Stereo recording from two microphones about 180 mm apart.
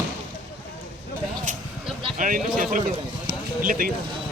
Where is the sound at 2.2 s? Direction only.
50° right (ahead or behind).